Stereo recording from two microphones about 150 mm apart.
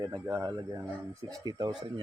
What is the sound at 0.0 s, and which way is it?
Speech, 25° right (ahead or behind).